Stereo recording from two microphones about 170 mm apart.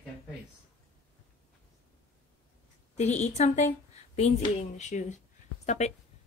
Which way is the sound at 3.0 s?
40° left (ahead or behind).